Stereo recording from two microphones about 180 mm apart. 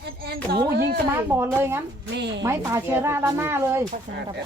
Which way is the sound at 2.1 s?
80° right.